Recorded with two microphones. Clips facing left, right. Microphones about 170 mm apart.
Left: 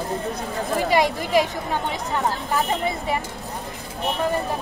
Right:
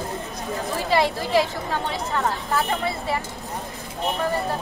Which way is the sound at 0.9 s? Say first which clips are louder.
Even; 15° left (ahead or behind).